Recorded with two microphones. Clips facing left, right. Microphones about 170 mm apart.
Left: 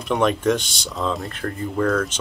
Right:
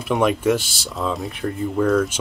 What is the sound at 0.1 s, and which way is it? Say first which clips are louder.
Speech: right 1 dB; 5° right (ahead or behind).